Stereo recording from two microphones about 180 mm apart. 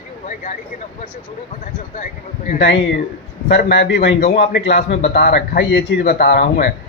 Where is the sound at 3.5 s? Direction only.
65° left (ahead or behind).